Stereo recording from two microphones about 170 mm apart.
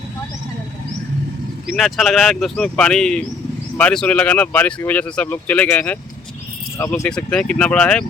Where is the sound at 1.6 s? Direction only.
Centre (ahead or behind).